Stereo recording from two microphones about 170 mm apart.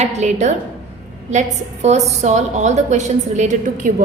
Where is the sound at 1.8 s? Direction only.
40° right (ahead or behind).